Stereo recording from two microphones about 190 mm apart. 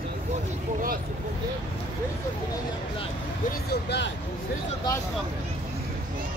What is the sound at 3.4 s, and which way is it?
Speech, 60° left (ahead or behind).